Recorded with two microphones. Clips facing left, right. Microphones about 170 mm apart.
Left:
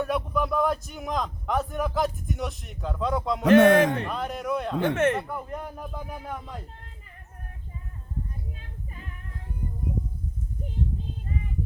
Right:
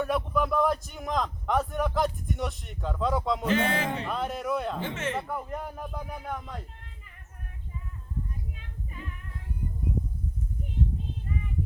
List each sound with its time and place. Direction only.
0.0 s a man's voice: centre (ahead or behind)
3.4 s speech: 70° left (ahead or behind)
4.0 s speech: centre (ahead or behind)
4.8 s speech: 60° left (ahead or behind)
5.3 s speech: centre (ahead or behind)